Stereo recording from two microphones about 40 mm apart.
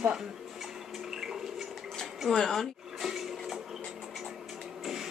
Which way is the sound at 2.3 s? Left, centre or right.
Centre.